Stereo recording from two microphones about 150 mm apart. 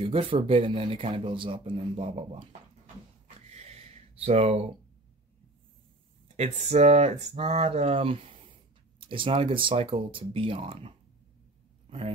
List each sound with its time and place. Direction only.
0.0 s speech: 35° right (ahead or behind)
3.3 s a sound: 45° right (ahead or behind)
6.2 s speech: 50° right (ahead or behind)